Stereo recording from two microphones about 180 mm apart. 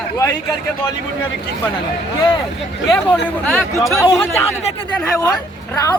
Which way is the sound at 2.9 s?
Centre (ahead or behind).